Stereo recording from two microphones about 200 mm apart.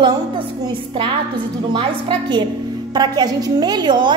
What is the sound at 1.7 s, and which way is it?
A woman's voice, 25° right (ahead or behind).